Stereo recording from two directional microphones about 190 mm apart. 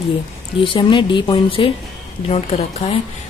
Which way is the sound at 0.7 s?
25° left (ahead or behind).